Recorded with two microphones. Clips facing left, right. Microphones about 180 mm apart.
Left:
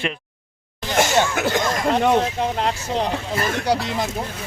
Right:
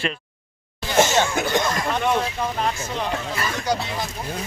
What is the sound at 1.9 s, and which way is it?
Speech, 35° left (ahead or behind).